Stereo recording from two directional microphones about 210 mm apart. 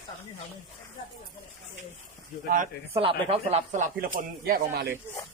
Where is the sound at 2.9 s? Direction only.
25° right (ahead or behind); by 4.9 s 45° right (ahead or behind).